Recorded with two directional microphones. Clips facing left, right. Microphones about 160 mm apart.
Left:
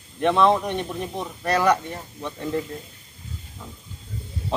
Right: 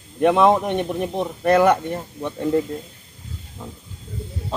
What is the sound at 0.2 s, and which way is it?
Speech, 15° right (ahead or behind).